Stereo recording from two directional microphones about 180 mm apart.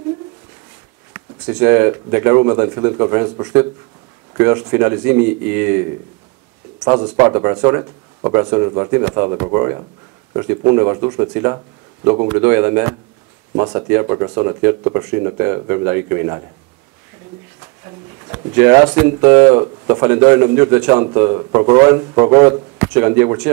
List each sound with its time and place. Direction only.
1.1 s a man's voice: 15° right (ahead or behind)
18.3 s a man's voice: 15° right (ahead or behind)